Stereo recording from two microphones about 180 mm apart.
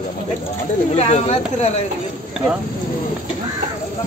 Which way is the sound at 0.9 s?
35° left (ahead or behind).